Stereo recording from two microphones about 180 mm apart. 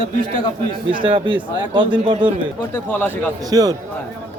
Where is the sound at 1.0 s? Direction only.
25° right (ahead or behind).